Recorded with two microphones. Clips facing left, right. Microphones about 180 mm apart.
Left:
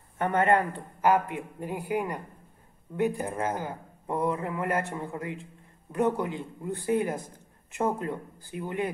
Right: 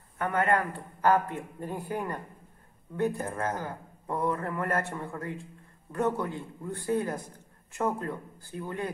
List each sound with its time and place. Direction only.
0.2 s a man's voice: 25° left (ahead or behind)